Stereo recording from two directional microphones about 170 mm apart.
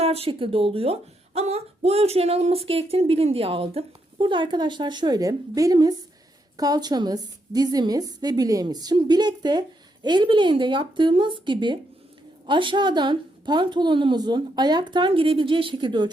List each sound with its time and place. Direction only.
0.0 s a woman's voice: 35° right (ahead or behind)